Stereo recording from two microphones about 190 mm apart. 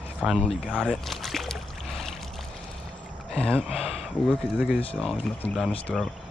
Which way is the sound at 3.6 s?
35° left (ahead or behind).